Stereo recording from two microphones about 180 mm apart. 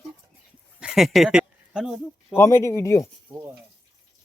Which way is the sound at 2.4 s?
15° left (ahead or behind).